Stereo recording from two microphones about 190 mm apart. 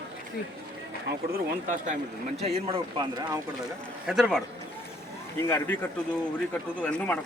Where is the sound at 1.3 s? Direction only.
40° right (ahead or behind); by 3.4 s 25° right (ahead or behind).